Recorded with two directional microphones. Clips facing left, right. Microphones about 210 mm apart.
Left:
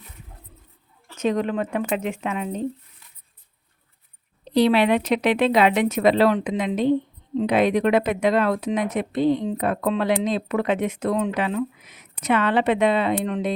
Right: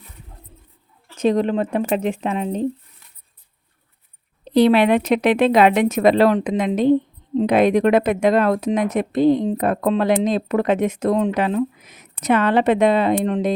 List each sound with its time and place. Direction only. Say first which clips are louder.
1.1 s speech: right 5 dB; 35° right (ahead or behind)
4.5 s speech: right 4 dB; 50° right (ahead or behind)